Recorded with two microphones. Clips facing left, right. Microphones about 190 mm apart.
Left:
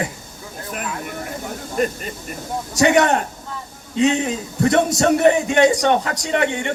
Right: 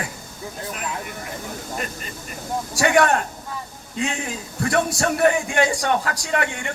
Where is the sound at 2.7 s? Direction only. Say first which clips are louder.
Left 3 dB; 20° left (ahead or behind).